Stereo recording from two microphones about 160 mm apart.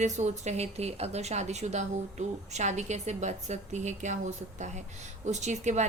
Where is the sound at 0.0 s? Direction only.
45° right (ahead or behind).